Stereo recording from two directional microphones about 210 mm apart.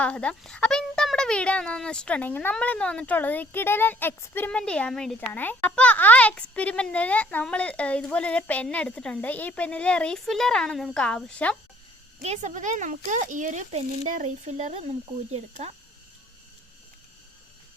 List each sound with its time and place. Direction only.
0.0 s a child's voice: 5° left (ahead or behind)
12.2 s speech: 35° right (ahead or behind)